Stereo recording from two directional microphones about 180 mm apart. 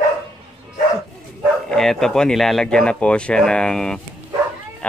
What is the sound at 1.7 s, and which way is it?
Speech, centre (ahead or behind).